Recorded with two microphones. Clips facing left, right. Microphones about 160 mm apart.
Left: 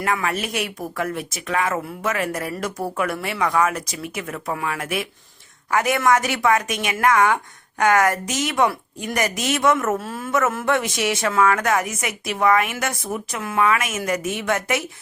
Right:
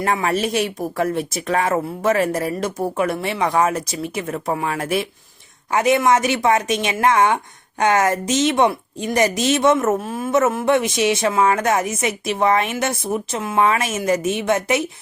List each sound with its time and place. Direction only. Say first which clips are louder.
0.0 s a woman's voice: right 4 dB; 30° right (ahead or behind)